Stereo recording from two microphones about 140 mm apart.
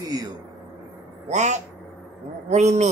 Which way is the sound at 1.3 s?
55° right (ahead or behind).